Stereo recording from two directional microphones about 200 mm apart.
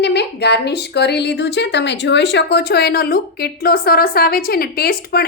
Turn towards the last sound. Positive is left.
turn(degrees=50)  # may be behind; listen again after turning